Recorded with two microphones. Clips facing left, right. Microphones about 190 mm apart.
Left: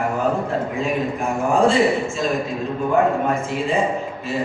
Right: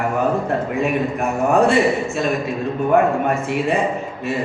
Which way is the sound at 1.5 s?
65° right (ahead or behind).